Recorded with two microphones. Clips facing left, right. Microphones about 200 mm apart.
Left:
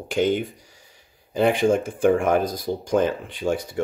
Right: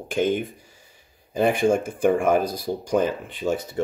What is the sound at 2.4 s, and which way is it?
Speech, 55° left (ahead or behind).